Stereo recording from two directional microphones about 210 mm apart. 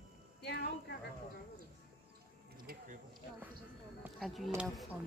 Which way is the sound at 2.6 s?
45° right (ahead or behind).